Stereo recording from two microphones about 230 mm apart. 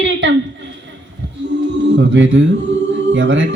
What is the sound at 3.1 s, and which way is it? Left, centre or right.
Speech, right.